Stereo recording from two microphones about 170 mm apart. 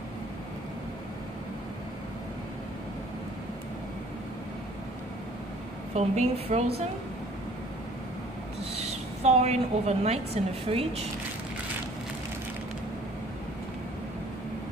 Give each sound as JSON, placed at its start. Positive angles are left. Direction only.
{"t": 5.9, "sound": "a woman's voice", "side_deg": -35}
{"t": 8.7, "sound": "a woman's voice", "side_deg": -40}